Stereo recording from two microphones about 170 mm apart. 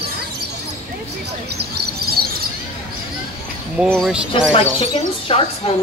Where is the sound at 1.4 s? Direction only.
70° right (ahead or behind).